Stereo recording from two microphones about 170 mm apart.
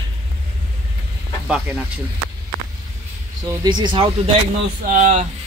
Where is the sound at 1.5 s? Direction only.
10° right (ahead or behind).